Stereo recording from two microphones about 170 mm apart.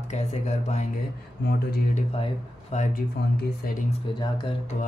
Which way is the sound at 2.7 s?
45° left (ahead or behind).